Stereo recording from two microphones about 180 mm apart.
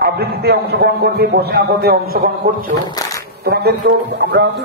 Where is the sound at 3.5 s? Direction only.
65° right (ahead or behind).